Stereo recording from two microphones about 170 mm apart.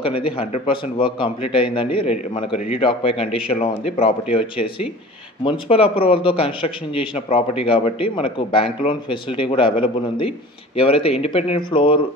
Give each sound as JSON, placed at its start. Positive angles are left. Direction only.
{"t": 0.0, "sound": "a man's voice", "side_deg": 30}